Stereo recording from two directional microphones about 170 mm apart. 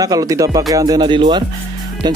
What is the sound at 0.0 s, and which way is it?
Speech, 20° right (ahead or behind).